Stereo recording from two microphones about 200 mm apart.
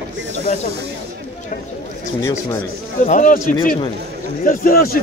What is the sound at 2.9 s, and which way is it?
Speech, 40° left (ahead or behind).